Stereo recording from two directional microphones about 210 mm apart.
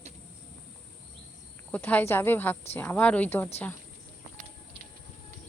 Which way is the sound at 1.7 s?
10° left (ahead or behind).